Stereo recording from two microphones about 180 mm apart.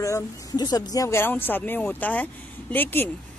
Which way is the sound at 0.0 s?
20° left (ahead or behind).